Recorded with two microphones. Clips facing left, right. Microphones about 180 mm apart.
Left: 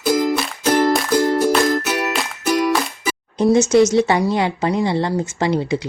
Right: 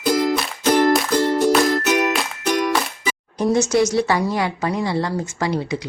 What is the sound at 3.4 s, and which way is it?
A woman's voice, 20° left (ahead or behind).